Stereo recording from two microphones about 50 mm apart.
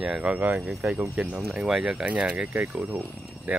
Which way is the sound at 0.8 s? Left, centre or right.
Right.